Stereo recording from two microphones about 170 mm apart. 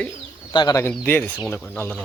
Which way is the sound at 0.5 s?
25° left (ahead or behind).